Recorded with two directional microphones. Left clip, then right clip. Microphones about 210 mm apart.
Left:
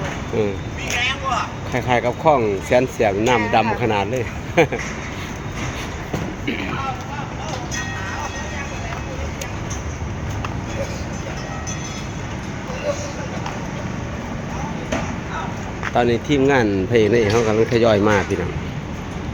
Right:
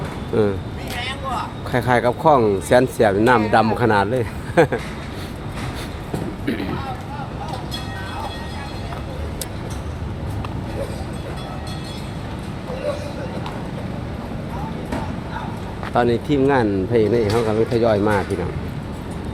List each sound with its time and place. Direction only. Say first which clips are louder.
0.3 s speech: right 3 dB; 30° right (ahead or behind)
1.7 s speech: right 2 dB; 25° right (ahead or behind)
6.4 s music: right 1 dB; 25° right (ahead or behind)
16.0 s speech: even; 10° right (ahead or behind)